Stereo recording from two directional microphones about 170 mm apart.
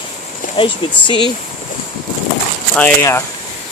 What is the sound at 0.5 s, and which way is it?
Speech, 30° left (ahead or behind).